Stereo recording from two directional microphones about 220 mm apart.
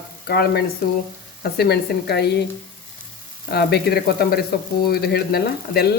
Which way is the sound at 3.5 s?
45° left (ahead or behind).